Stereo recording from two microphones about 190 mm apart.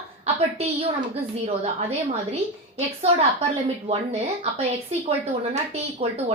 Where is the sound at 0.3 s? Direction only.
30° right (ahead or behind).